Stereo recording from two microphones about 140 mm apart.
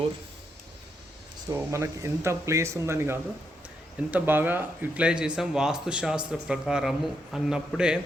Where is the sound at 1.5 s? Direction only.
20° right (ahead or behind).